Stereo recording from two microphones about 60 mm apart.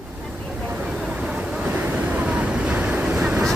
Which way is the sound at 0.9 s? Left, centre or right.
Centre.